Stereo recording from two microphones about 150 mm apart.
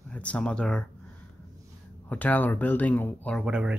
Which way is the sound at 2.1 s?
10° left (ahead or behind).